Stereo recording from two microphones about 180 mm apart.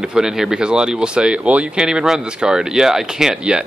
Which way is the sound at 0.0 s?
5° right (ahead or behind).